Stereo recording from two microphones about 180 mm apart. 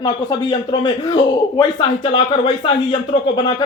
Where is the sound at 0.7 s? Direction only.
25° left (ahead or behind).